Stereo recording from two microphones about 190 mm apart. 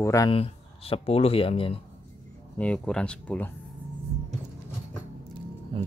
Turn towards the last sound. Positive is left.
turn(degrees=-30)  # may be behind; listen again after turning